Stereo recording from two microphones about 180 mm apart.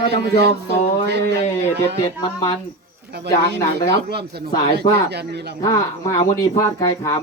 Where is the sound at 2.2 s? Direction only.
20° left (ahead or behind).